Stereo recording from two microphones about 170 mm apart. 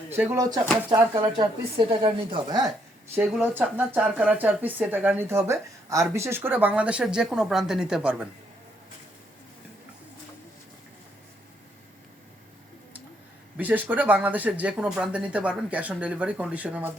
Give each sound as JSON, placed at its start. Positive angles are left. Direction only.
{"t": 0.1, "sound": "a woman's voice", "side_deg": -10}
{"t": 3.2, "sound": "speech", "side_deg": -10}
{"t": 13.6, "sound": "speech", "side_deg": -10}